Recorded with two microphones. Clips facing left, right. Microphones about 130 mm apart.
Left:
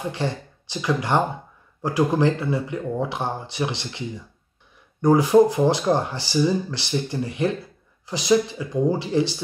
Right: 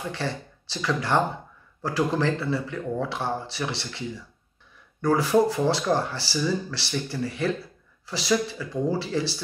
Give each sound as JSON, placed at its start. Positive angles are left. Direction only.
{"t": 0.1, "sound": "speech", "side_deg": 15}
{"t": 5.0, "sound": "speech", "side_deg": 20}